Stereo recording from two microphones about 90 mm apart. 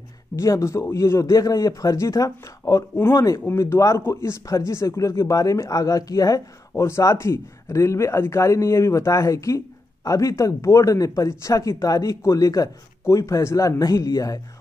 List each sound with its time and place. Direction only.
0.4 s a man's voice: 35° left (ahead or behind)